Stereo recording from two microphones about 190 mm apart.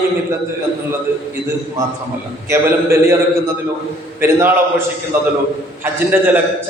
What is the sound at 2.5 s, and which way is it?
Speech, 15° right (ahead or behind).